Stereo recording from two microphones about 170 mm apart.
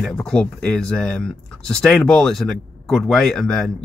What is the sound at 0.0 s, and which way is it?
Speech, 5° left (ahead or behind).